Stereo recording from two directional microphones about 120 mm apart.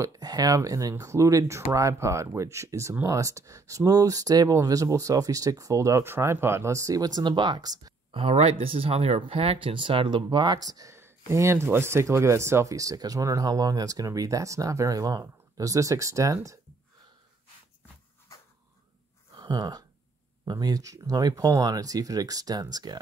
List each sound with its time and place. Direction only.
0.0 s speech: 30° right (ahead or behind)
8.1 s speech: 50° right (ahead or behind); by 16.3 s 25° right (ahead or behind)
19.3 s a sound: 35° right (ahead or behind)
20.4 s speech: 30° right (ahead or behind)